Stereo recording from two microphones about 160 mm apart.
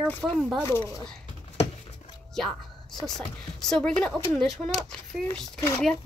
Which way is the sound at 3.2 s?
5° left (ahead or behind).